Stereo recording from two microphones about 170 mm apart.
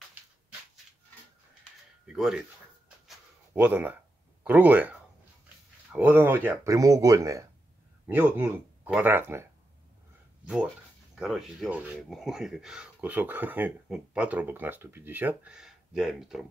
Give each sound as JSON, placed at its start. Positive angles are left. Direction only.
{"t": 2.1, "sound": "speech", "side_deg": 0}
{"t": 3.5, "sound": "speech", "side_deg": -10}